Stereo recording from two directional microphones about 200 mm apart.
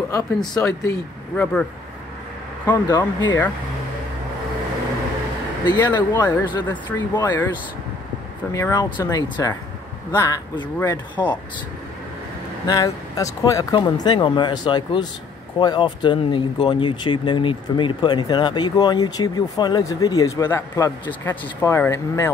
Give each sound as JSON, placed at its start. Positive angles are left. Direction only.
{"t": 0.1, "sound": "speech", "side_deg": 15}
{"t": 5.7, "sound": "speech", "side_deg": 20}
{"t": 8.5, "sound": "speech", "side_deg": 15}
{"t": 12.6, "sound": "speech", "side_deg": 15}